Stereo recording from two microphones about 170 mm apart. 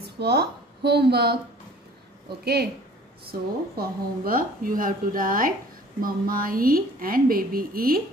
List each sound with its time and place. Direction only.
0.0 s a woman's voice: 70° right (ahead or behind)
2.4 s a woman's voice: 70° right (ahead or behind)